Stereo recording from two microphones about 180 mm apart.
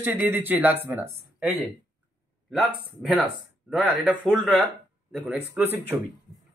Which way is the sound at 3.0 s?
5° right (ahead or behind).